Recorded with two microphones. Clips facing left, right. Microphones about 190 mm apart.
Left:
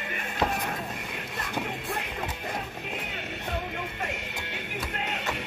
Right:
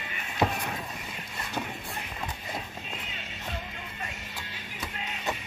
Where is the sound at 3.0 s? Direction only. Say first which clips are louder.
Left 5 dB; 60° left (ahead or behind).